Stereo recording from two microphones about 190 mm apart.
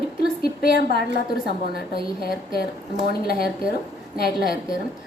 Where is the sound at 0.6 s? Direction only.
50° left (ahead or behind).